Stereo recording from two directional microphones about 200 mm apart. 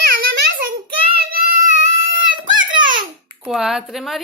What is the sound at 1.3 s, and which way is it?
Child singing, 50° right (ahead or behind).